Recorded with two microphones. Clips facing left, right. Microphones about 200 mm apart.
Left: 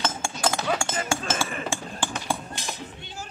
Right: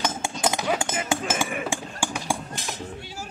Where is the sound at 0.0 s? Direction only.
20° right (ahead or behind).